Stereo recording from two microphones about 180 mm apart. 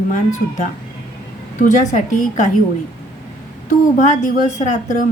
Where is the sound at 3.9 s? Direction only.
40° left (ahead or behind).